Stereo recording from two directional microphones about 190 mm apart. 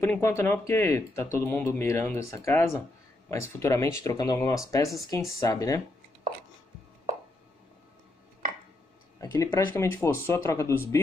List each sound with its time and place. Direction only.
0.0 s speech: 15° left (ahead or behind)
9.2 s speech: 15° left (ahead or behind)